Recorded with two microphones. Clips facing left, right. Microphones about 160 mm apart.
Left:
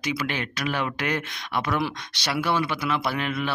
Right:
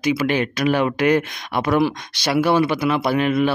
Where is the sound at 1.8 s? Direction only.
10° right (ahead or behind).